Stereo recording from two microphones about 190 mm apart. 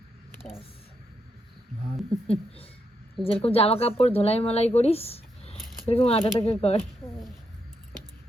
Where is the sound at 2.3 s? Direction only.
30° left (ahead or behind).